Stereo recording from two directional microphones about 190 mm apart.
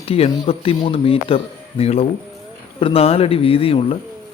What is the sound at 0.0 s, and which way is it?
Speech, 30° left (ahead or behind).